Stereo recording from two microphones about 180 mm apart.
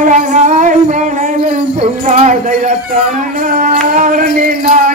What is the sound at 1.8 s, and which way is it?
Music, 40° right (ahead or behind).